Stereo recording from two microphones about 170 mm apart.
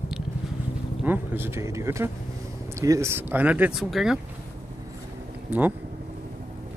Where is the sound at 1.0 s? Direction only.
10° right (ahead or behind).